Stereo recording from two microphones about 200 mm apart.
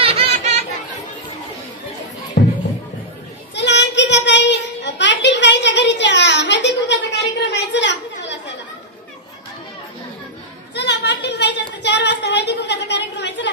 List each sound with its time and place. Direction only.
0.0 s chatter: 30° right (ahead or behind)
2.4 s music: 40° left (ahead or behind)
3.5 s child singing: 60° left (ahead or behind)
10.7 s a sound: 60° left (ahead or behind)